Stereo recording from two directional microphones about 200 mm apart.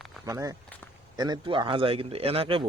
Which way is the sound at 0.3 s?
15° right (ahead or behind).